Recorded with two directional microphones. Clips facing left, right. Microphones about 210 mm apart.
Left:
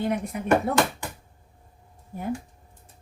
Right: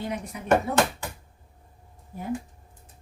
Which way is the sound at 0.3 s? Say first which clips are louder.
Left 6 dB; 55° left (ahead or behind).